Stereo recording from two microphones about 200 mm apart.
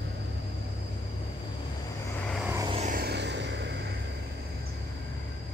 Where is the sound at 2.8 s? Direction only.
50° right (ahead or behind).